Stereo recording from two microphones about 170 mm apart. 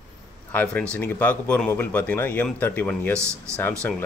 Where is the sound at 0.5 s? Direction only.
10° left (ahead or behind).